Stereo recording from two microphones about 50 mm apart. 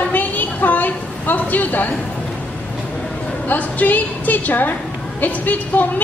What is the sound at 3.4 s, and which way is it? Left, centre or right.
A woman's voice, left.